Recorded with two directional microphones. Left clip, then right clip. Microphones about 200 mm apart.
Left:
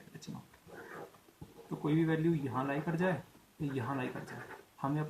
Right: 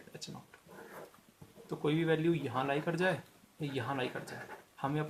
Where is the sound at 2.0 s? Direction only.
40° right (ahead or behind).